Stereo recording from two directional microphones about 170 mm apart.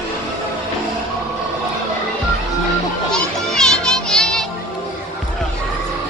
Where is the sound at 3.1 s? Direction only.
5° left (ahead or behind).